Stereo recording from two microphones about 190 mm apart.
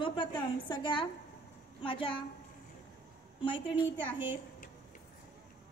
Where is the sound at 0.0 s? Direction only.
25° left (ahead or behind).